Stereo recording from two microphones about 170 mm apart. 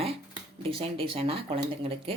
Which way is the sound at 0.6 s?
35° right (ahead or behind).